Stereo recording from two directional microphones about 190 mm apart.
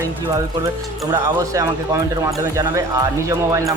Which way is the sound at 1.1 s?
15° right (ahead or behind).